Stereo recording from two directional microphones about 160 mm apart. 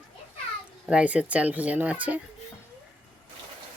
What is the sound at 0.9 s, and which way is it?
Speech, 10° right (ahead or behind).